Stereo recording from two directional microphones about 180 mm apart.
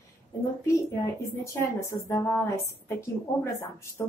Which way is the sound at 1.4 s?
15° left (ahead or behind).